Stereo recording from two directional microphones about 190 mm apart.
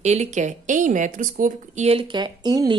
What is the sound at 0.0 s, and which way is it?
Speech, 35° right (ahead or behind).